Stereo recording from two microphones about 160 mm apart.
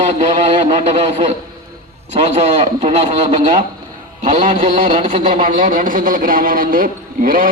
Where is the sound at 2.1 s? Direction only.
45° right (ahead or behind).